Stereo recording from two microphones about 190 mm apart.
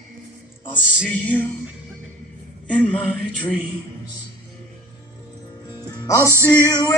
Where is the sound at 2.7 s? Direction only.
5° left (ahead or behind).